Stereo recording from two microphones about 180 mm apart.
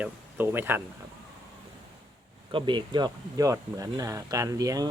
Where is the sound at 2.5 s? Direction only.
30° right (ahead or behind).